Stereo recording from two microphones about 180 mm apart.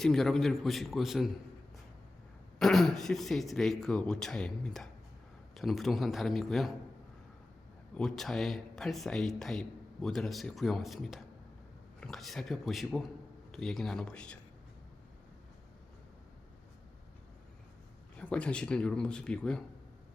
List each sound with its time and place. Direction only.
0.0 s speech: centre (ahead or behind)
2.6 s speech: centre (ahead or behind)
7.9 s speech: centre (ahead or behind)
18.2 s speech: 5° left (ahead or behind)